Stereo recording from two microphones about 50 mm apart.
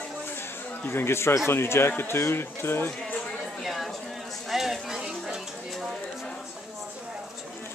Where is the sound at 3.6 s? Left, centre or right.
Centre.